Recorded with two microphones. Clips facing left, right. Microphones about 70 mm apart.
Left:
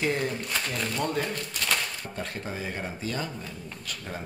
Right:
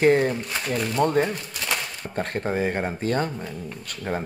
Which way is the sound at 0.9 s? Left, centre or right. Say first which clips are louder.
Right 9 dB; right.